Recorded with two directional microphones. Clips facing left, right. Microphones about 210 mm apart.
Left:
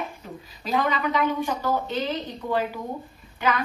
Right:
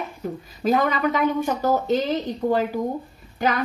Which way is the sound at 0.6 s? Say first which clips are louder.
Right 5 dB; 45° right (ahead or behind).